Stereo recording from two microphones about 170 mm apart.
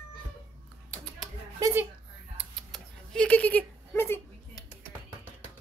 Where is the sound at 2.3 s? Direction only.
5° left (ahead or behind).